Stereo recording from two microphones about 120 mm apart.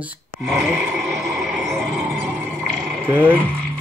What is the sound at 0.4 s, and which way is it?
Music, centre (ahead or behind).